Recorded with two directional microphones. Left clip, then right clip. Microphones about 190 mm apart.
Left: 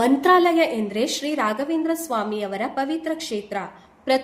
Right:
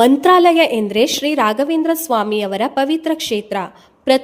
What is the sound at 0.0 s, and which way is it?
A woman's voice, 40° right (ahead or behind).